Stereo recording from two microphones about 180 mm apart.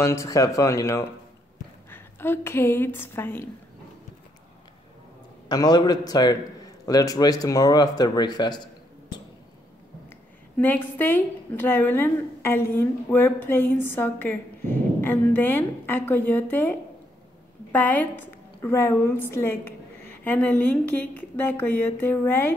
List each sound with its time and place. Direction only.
0.0 s a woman's voice: 15° left (ahead or behind)
5.5 s speech: 20° left (ahead or behind)
10.6 s a woman's voice: 10° left (ahead or behind)
17.7 s a woman's voice: 10° left (ahead or behind)